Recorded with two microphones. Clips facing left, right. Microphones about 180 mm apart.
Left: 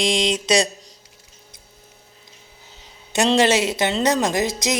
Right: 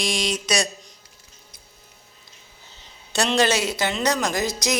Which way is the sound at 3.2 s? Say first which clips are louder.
Left 4 dB; 25° left (ahead or behind).